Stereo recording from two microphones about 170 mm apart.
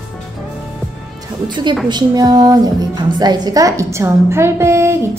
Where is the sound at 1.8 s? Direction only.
25° right (ahead or behind).